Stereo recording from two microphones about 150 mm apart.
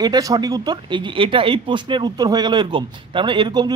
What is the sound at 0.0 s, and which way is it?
Speech, 25° right (ahead or behind).